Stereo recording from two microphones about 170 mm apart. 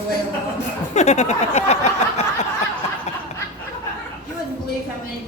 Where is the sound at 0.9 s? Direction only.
40° left (ahead or behind).